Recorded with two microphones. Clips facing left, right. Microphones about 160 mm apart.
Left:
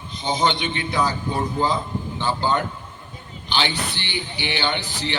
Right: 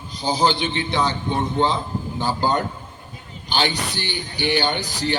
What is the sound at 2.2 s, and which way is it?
A man's voice, 40° right (ahead or behind).